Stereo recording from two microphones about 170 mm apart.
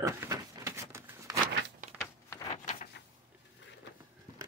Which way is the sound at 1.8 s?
50° right (ahead or behind).